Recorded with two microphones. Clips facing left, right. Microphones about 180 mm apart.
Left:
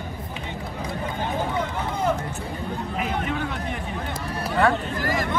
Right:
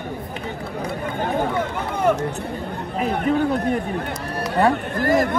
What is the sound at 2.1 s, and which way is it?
Hubbub, 60° right (ahead or behind).